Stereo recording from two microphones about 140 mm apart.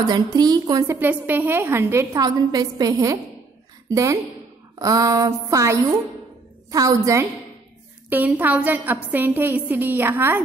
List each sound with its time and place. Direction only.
0.0 s a woman's voice: 30° right (ahead or behind)
0.9 s a woman's voice: 15° right (ahead or behind)
8.1 s a woman's voice: 15° right (ahead or behind)